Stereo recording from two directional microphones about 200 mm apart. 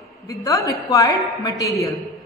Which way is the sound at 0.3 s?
15° left (ahead or behind).